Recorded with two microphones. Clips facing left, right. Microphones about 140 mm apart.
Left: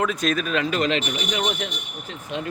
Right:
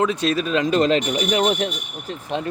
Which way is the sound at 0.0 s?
25° right (ahead or behind).